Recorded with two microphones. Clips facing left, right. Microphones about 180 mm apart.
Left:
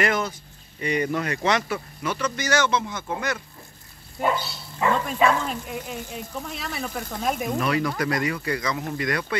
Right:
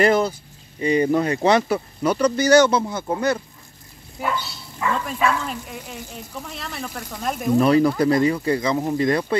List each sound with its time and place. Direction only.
0.0 s speech: 30° right (ahead or behind)
5.0 s frying: centre (ahead or behind)
7.5 s speech: 30° right (ahead or behind)